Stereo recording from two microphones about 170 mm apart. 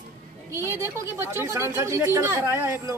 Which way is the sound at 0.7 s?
15° right (ahead or behind).